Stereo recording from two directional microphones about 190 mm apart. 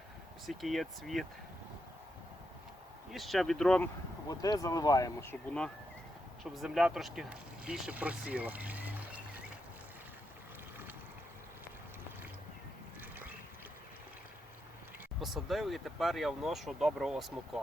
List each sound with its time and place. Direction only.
0.4 s speech: centre (ahead or behind)
3.1 s speech: centre (ahead or behind)
4.3 s speech: 20° left (ahead or behind); by 9.2 s 10° right (ahead or behind)
15.2 s speech: centre (ahead or behind)